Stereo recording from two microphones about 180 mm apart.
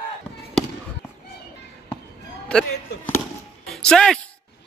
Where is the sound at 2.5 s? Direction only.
5° left (ahead or behind).